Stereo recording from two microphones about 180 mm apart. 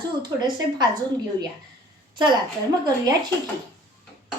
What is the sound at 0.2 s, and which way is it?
Speech, 25° right (ahead or behind).